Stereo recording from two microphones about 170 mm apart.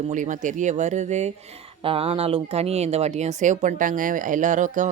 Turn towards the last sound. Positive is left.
turn(degrees=-50)  # may be behind; listen again after turning